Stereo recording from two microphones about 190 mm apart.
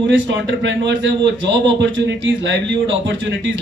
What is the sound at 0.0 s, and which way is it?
A man's voice, 75° right (ahead or behind).